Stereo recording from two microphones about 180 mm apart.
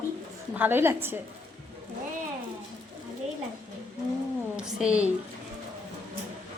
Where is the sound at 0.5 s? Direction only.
10° right (ahead or behind).